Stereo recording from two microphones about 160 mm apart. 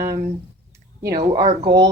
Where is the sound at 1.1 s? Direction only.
25° right (ahead or behind).